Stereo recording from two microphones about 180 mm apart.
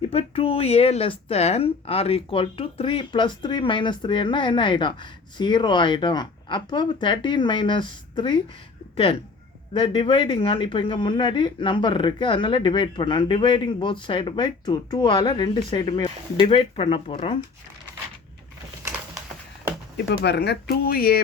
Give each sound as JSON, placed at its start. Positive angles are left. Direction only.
{"t": 0.1, "sound": "speech", "side_deg": 35}
{"t": 20.1, "sound": "speech", "side_deg": 65}